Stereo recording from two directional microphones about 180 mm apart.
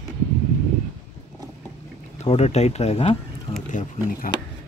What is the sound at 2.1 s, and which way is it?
Speech, 35° left (ahead or behind).